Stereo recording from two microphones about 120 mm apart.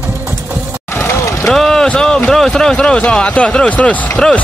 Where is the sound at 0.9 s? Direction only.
25° left (ahead or behind).